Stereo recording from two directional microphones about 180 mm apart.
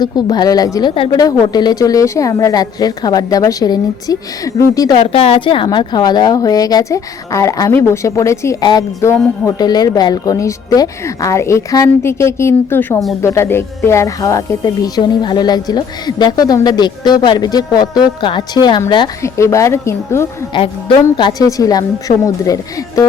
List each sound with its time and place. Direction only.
0.0 s speech: 20° left (ahead or behind)
5.0 s a woman's voice: 35° left (ahead or behind); by 20.2 s 15° left (ahead or behind)
20.5 s speech: 30° left (ahead or behind)